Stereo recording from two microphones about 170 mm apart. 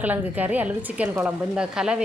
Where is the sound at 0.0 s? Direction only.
10° right (ahead or behind).